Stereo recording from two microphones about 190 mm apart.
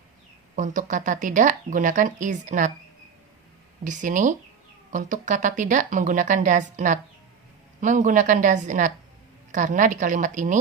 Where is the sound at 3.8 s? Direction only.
40° right (ahead or behind).